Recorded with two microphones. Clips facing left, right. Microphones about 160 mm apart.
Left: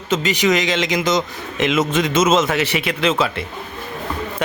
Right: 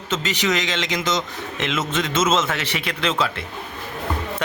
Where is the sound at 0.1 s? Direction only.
10° left (ahead or behind).